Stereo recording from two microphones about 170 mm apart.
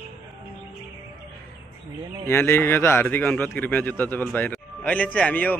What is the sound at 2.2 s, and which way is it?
Speech, 15° left (ahead or behind).